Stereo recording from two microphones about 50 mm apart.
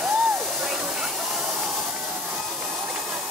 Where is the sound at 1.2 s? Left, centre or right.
Centre.